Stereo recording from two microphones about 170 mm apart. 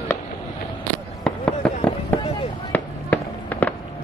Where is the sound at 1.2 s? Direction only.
5° left (ahead or behind).